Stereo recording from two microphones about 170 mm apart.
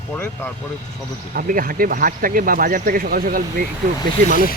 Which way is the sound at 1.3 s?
55° right (ahead or behind).